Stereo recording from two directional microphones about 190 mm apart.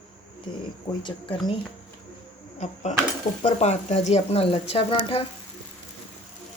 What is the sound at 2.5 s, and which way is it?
Speech, 40° left (ahead or behind).